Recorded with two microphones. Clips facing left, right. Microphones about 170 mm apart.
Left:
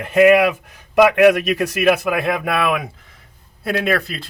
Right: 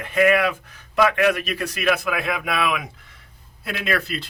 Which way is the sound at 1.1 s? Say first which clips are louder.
Left 8 dB; 65° left (ahead or behind).